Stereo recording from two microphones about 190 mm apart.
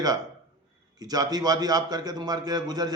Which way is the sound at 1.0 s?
20° right (ahead or behind).